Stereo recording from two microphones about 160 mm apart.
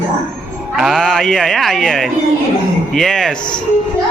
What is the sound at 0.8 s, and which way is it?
A man's voice, centre (ahead or behind).